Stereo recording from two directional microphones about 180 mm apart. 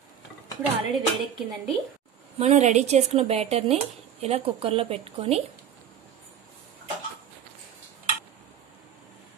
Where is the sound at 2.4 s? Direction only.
40° right (ahead or behind).